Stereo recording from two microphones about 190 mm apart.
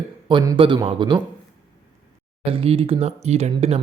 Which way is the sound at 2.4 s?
30° right (ahead or behind).